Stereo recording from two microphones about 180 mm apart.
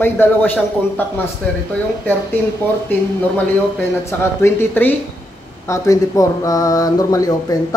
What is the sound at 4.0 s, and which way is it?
Speech, 15° left (ahead or behind).